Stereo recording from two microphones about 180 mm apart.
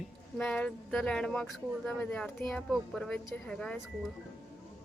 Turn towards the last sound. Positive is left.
turn(degrees=5)  # may be behind; listen again after turning